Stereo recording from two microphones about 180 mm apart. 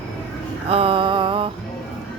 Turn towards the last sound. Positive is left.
turn(degrees=-30)  # may be behind; listen again after turning